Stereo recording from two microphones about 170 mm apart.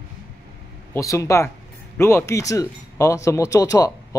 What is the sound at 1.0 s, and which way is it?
Speech, 20° left (ahead or behind).